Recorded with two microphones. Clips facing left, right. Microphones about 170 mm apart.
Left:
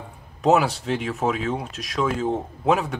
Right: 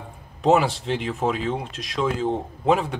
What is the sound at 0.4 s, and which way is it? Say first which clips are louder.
Speech: even; centre (ahead or behind).